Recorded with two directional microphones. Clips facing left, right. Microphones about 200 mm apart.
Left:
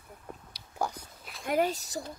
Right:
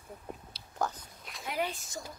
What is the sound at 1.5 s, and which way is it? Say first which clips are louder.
Speech: left 7 dB; 45° left (ahead or behind).